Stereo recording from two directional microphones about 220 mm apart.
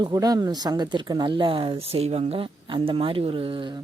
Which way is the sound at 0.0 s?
15° right (ahead or behind).